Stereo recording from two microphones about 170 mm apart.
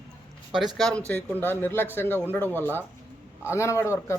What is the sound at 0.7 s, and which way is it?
A man's voice, 5° left (ahead or behind).